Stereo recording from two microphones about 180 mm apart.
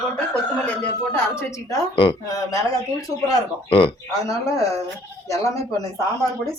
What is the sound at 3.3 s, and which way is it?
Speech, 30° left (ahead or behind).